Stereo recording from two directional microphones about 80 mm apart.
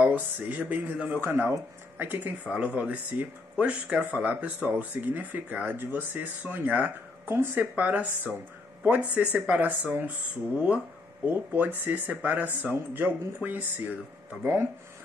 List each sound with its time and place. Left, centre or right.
0.0 s speech: centre
11.2 s speech: right